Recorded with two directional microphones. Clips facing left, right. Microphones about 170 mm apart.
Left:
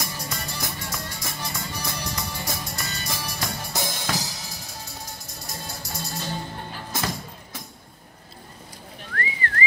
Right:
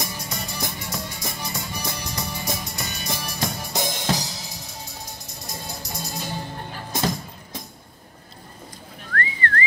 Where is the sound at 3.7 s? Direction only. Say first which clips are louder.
Right 5 dB; 20° right (ahead or behind).